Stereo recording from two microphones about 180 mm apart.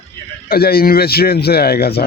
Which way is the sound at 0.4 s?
55° left (ahead or behind).